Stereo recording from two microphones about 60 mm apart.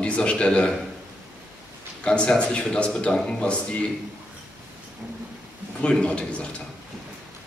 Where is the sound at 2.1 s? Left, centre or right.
Centre.